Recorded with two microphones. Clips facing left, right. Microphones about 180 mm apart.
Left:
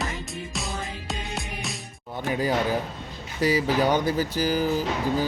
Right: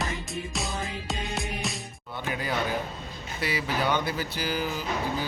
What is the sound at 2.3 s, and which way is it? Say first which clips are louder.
Speech: left 5 dB; 40° left (ahead or behind).